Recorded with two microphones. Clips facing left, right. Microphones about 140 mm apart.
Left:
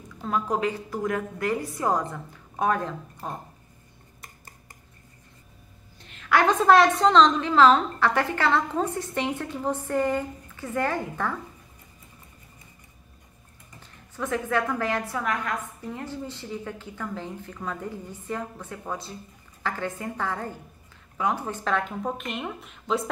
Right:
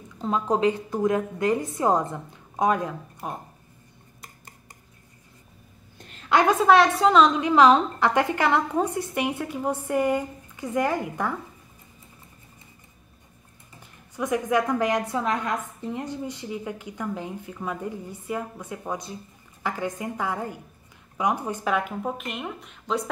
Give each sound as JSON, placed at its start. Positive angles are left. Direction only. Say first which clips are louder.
{"t": 0.2, "sound": "a woman's voice", "louder": "right 3 dB", "side_deg": -20}
{"t": 5.9, "sound": "a sound", "louder": "right 4 dB", "side_deg": -40}
{"t": 6.4, "sound": "a woman's voice", "louder": "even", "side_deg": 0}
{"t": 13.7, "sound": "a woman's voice", "louder": "right 3 dB", "side_deg": -15}